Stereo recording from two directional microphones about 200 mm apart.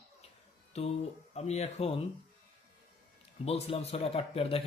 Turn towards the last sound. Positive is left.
turn(degrees=30)  # may be behind; listen again after turning